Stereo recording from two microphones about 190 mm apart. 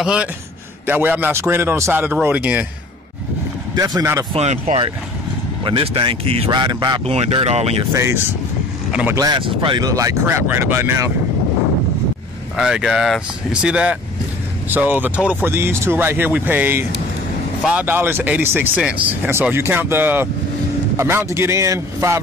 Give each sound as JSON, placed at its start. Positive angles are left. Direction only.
{"t": 0.0, "sound": "speech", "side_deg": -5}
{"t": 3.7, "sound": "speech", "side_deg": -20}
{"t": 4.3, "sound": "speech", "side_deg": -35}
{"t": 7.9, "sound": "speech", "side_deg": -15}
{"t": 12.5, "sound": "speech", "side_deg": -5}